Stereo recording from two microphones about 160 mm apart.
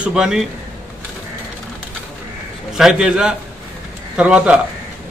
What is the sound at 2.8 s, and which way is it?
A man's voice, 5° right (ahead or behind).